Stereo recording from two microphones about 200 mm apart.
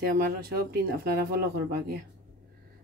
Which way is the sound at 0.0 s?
50° right (ahead or behind).